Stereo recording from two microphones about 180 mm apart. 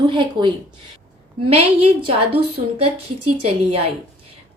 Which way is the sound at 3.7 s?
35° right (ahead or behind).